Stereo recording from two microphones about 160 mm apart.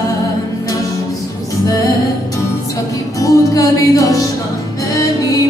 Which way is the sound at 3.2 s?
20° left (ahead or behind).